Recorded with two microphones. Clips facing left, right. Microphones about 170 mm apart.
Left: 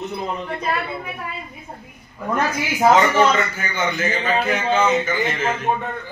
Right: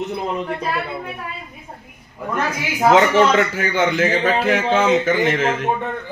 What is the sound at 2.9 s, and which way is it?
A man's voice, 80° right.